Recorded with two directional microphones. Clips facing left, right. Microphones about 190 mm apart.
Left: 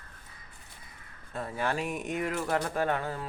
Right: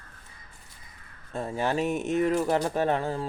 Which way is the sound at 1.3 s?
25° right (ahead or behind).